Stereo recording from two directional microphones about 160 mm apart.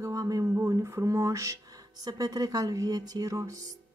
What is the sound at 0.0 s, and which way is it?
Music, 20° right (ahead or behind).